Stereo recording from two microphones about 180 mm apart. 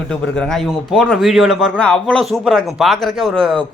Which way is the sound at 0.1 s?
5° left (ahead or behind).